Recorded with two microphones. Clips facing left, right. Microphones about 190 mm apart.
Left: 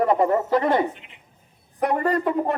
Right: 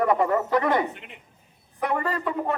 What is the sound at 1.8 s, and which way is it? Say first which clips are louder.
Speech: left 5 dB; 40° left (ahead or behind).